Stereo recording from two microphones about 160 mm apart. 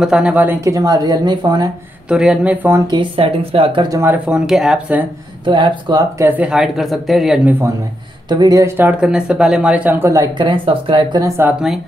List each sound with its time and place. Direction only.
0.0 s speech: 5° right (ahead or behind); by 1.7 s 25° right (ahead or behind)
2.0 s speech: 5° right (ahead or behind)
2.9 s speech: 35° right (ahead or behind)
4.0 s speech: 10° right (ahead or behind)
5.4 s speech: 30° right (ahead or behind)
6.2 s speech: 10° right (ahead or behind)
8.3 s speech: 25° right (ahead or behind)
10.3 s speech: 30° right (ahead or behind)